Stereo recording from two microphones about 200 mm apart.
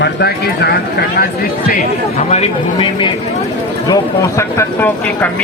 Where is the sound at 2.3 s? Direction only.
30° left (ahead or behind).